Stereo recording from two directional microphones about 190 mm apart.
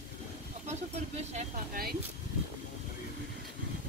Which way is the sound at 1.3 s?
50° right (ahead or behind).